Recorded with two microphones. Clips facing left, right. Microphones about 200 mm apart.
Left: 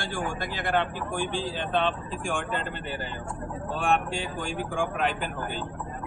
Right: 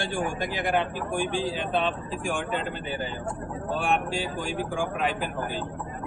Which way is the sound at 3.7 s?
Centre (ahead or behind).